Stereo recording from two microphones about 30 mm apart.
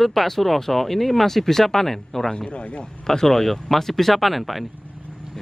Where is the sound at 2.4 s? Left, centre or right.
Left.